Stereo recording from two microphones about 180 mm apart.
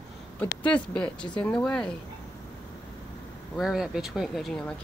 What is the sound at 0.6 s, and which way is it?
Speech, 5° left (ahead or behind).